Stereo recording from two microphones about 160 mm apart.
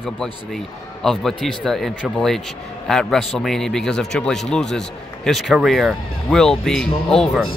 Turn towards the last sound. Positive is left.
turn(degrees=5)  # may be behind; listen again after turning